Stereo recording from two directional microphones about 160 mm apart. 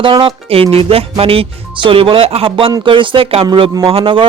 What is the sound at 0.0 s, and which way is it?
Speech, 30° right (ahead or behind).